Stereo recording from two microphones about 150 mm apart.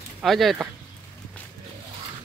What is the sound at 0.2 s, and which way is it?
Speech, centre (ahead or behind).